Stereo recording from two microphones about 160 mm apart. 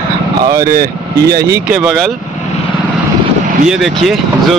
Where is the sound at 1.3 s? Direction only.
90° right.